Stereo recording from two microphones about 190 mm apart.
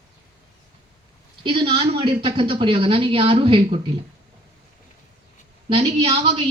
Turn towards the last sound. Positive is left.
turn(degrees=-30)  # may be behind; listen again after turning